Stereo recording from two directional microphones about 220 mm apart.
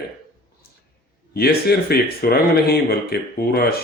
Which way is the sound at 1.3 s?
45° left (ahead or behind).